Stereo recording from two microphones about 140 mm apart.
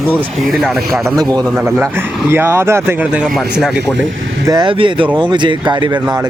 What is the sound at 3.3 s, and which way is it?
Speech, centre (ahead or behind).